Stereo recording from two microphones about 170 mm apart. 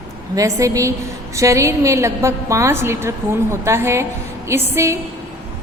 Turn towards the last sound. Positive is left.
turn(degrees=-15)  # may be behind; listen again after turning